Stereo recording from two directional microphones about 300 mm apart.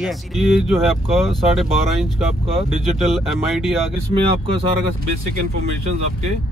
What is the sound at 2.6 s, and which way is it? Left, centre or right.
Speech, centre.